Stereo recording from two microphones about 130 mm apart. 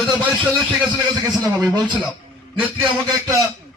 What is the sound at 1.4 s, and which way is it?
Speech, 25° right (ahead or behind).